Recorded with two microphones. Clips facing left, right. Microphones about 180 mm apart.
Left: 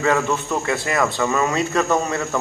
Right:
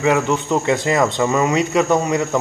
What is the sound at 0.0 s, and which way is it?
Speech, 15° right (ahead or behind).